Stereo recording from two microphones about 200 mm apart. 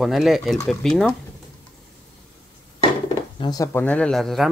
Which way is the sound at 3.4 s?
20° left (ahead or behind).